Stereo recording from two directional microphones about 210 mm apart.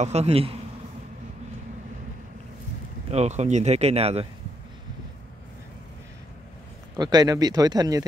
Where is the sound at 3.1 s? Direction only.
30° right (ahead or behind).